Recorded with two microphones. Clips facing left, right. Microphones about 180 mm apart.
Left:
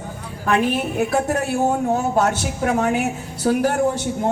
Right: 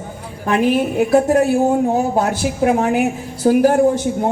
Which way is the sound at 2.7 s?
35° right (ahead or behind).